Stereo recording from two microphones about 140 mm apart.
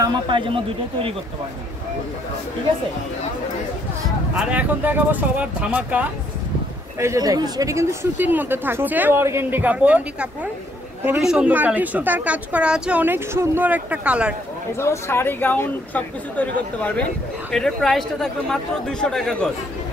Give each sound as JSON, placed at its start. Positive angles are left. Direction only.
{"t": 0.0, "sound": "speech", "side_deg": -35}
{"t": 4.4, "sound": "speech", "side_deg": -10}
{"t": 7.0, "sound": "speech", "side_deg": -25}
{"t": 14.8, "sound": "speech", "side_deg": 20}